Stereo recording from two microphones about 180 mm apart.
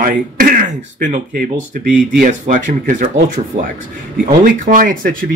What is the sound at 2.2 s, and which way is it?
Speech, 45° right (ahead or behind).